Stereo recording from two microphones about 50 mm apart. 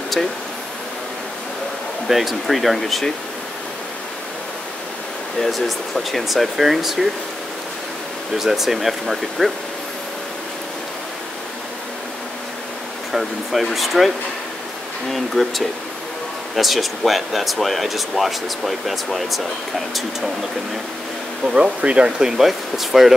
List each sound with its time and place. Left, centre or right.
2.0 s speech: centre
5.4 s speech: centre
8.4 s speech: centre
13.1 s speech: centre
15.1 s speech: centre
21.5 s speech: centre
22.4 s speech: centre